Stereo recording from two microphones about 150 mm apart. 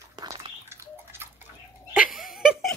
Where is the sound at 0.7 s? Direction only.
15° right (ahead or behind).